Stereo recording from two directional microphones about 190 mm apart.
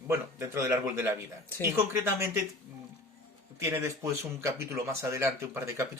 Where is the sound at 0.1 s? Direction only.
15° right (ahead or behind).